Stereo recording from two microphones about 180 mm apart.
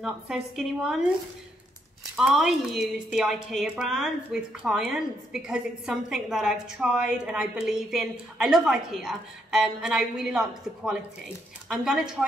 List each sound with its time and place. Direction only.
0.0 s a woman's voice: 5° right (ahead or behind)
2.1 s a woman's voice: 5° right (ahead or behind)